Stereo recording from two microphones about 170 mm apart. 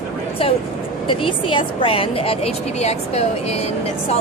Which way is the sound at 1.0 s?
30° left (ahead or behind).